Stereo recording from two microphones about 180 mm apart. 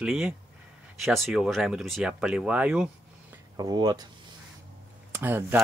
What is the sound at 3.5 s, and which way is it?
Speech, 20° right (ahead or behind).